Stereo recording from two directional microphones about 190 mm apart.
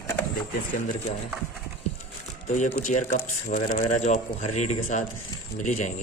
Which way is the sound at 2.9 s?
40° left (ahead or behind).